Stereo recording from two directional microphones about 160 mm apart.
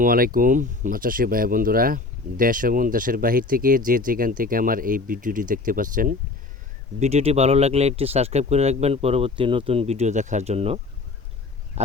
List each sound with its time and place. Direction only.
0.0 s speech: 65° right (ahead or behind)
7.0 s speech: 40° right (ahead or behind)